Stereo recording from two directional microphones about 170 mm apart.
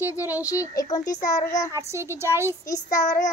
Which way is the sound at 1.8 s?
15° right (ahead or behind).